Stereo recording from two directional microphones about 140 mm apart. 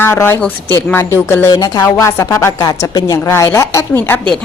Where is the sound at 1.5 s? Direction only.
30° left (ahead or behind).